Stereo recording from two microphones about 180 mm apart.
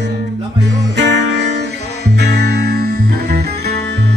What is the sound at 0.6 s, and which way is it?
Guitar, 80° right.